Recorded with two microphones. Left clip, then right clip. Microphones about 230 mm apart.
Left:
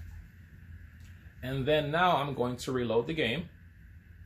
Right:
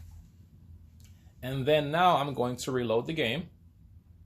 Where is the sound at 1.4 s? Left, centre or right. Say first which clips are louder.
Right 2 dB; right.